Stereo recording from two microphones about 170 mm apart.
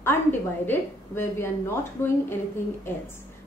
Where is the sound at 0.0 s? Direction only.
10° left (ahead or behind).